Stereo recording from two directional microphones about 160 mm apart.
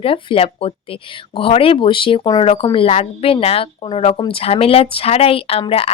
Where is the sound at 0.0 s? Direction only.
35° left (ahead or behind).